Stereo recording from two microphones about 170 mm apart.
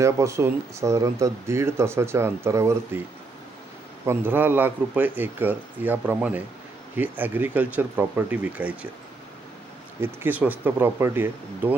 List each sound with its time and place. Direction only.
0.0 s speech: 15° right (ahead or behind)
4.0 s speech: 15° right (ahead or behind)
10.0 s speech: 10° right (ahead or behind)